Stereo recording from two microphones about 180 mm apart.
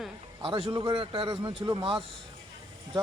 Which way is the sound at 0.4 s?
30° right (ahead or behind).